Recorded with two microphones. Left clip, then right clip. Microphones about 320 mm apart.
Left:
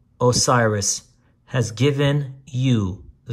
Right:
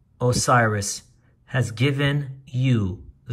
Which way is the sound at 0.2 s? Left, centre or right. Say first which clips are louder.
Left 2 dB; centre.